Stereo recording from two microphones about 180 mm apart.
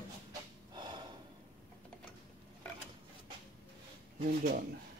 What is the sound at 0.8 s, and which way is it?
Gasp, 25° right (ahead or behind).